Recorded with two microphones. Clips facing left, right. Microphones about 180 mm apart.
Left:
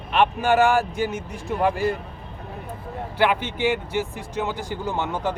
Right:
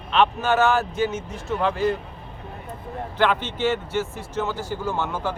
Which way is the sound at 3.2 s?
10° left (ahead or behind).